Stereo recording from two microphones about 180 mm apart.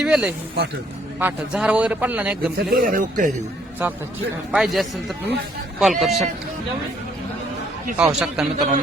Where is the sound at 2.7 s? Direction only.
50° right (ahead or behind).